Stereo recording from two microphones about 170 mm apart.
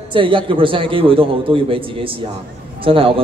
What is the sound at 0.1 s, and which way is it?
A man's voice, 30° right (ahead or behind).